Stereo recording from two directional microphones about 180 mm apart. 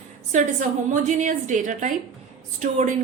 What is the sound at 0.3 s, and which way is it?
A woman's voice, 40° right (ahead or behind).